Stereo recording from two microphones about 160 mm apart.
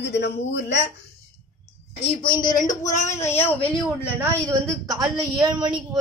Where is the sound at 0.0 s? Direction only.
90° left.